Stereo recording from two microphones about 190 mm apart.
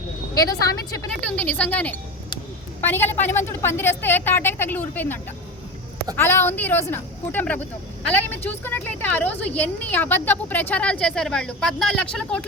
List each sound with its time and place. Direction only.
0.3 s a woman's voice: 15° left (ahead or behind)